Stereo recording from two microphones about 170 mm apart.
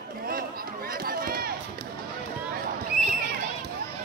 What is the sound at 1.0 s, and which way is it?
Run, 60° right (ahead or behind).